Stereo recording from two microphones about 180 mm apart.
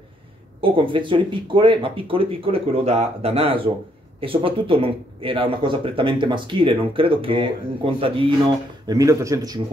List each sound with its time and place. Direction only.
0.6 s speech: 30° right (ahead or behind)